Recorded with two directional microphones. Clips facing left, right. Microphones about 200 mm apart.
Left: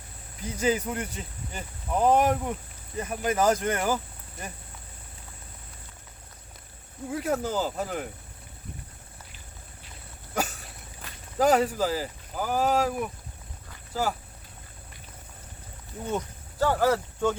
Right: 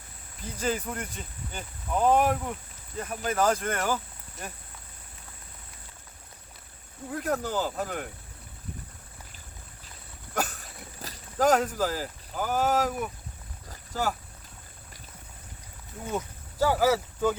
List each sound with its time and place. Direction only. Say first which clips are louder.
0.6 s speech: left 4 dB; 10° left (ahead or behind)
7.1 s speech: left 2 dB; 10° left (ahead or behind)
11.0 s a sound: right 4 dB; 40° right (ahead or behind)
11.3 s speech: left 1 dB; centre (ahead or behind)
16.1 s speech: right 1 dB; 10° right (ahead or behind)